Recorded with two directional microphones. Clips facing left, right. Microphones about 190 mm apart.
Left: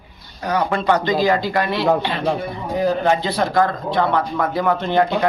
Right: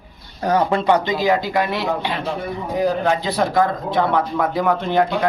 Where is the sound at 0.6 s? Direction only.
20° right (ahead or behind).